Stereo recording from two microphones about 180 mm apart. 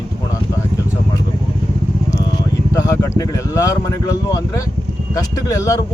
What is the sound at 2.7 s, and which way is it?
Speech, 15° left (ahead or behind).